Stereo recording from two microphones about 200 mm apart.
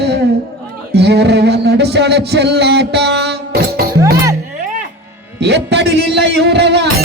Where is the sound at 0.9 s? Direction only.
55° right (ahead or behind).